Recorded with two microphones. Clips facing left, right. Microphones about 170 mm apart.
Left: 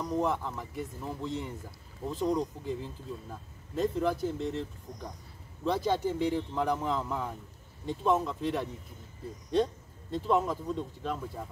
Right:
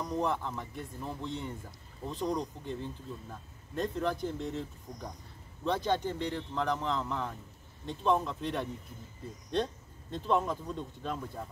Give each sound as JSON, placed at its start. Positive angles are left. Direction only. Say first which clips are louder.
{"t": 0.1, "sound": "speech", "louder": "left 2 dB", "side_deg": 5}
{"t": 10.1, "sound": "speech", "louder": "left 2 dB", "side_deg": 5}